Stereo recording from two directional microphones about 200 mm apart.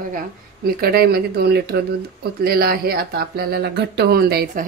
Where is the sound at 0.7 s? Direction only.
50° right (ahead or behind).